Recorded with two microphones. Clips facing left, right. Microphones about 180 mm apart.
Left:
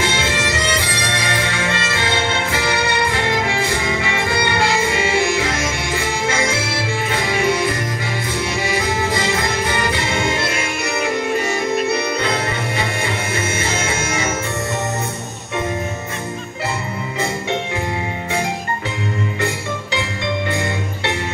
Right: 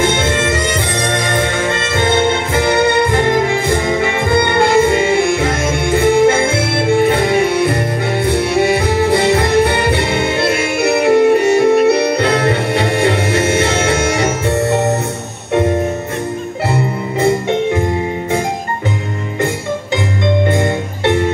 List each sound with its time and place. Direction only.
0.0 s music: 50° right (ahead or behind); by 15.0 s 70° right (ahead or behind)
16.7 s music: 55° right (ahead or behind)
20.4 s music: 50° right (ahead or behind)